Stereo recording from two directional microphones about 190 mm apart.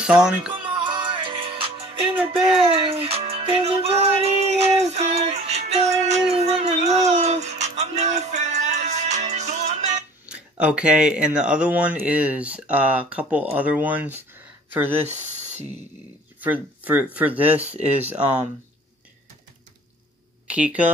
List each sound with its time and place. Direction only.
0.0 s speech: 5° right (ahead or behind)
0.6 s music: 25° right (ahead or behind)
10.2 s speech: 5° right (ahead or behind)
16.3 s speech: 10° right (ahead or behind)
20.4 s speech: 5° right (ahead or behind)